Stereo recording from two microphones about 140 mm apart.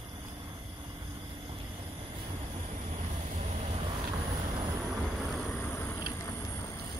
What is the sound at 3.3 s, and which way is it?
Vehicle, 55° right (ahead or behind).